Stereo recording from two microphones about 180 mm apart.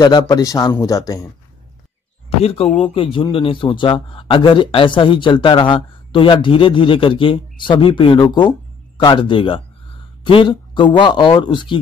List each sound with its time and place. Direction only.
0.0 s a man's voice: 20° left (ahead or behind)
2.4 s a man's voice: 30° left (ahead or behind)